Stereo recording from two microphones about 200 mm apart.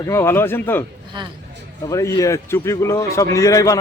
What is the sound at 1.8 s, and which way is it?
A man's voice, 15° left (ahead or behind).